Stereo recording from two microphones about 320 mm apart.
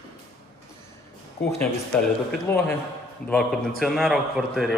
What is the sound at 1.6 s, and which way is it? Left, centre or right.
A man's voice, centre.